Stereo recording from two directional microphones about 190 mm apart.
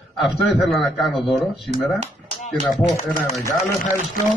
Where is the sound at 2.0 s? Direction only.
35° right (ahead or behind).